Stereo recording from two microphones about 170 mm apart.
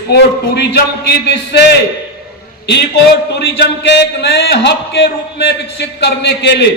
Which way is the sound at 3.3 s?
75° left (ahead or behind).